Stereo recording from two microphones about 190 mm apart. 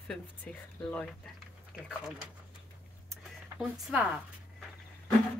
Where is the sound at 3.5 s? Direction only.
Centre (ahead or behind).